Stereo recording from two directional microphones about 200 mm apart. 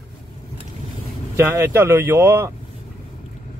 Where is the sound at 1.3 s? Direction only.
10° right (ahead or behind).